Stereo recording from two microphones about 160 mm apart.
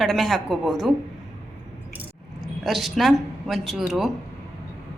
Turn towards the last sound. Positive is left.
turn(degrees=0)  # may be behind; listen again after turning